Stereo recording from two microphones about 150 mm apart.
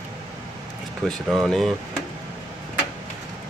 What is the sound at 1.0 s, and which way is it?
Speech, centre (ahead or behind).